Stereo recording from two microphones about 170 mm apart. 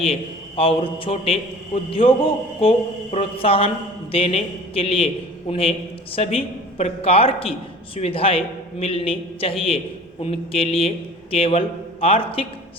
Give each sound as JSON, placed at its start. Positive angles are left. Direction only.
{"t": 0.0, "sound": "a man's voice", "side_deg": 35}